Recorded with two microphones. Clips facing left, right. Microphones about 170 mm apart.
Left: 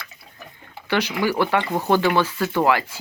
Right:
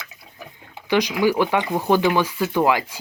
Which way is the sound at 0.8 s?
15° right (ahead or behind).